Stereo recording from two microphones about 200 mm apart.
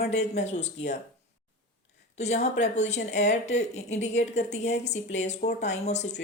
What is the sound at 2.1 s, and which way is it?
A woman's voice, 35° left (ahead or behind).